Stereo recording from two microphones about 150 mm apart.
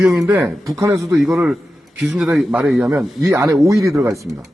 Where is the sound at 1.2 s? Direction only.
5° right (ahead or behind).